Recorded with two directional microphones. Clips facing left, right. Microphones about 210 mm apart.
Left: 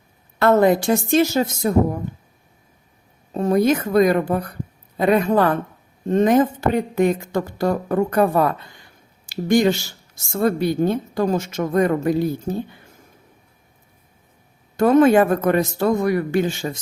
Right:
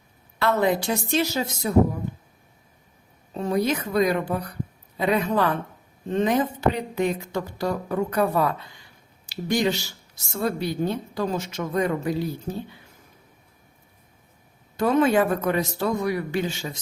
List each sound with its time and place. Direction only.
0.3 s speech: 50° left (ahead or behind)
3.3 s speech: 50° left (ahead or behind)
14.8 s speech: 50° left (ahead or behind)